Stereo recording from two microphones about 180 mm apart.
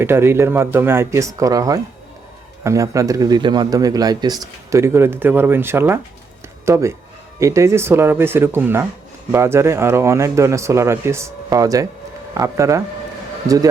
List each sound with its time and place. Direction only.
0.0 s speech: 15° right (ahead or behind)